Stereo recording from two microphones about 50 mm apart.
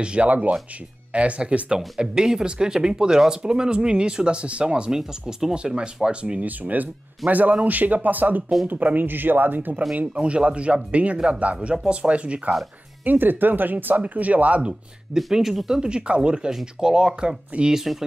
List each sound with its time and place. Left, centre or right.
0.0 s speech: right
6.4 s speech: right
10.1 s speech: right
13.0 s speech: right
15.1 s speech: centre